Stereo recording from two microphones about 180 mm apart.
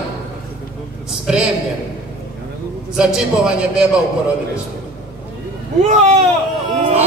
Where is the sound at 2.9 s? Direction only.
5° right (ahead or behind).